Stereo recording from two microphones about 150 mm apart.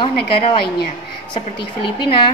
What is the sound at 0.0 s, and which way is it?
Speech, 35° left (ahead or behind).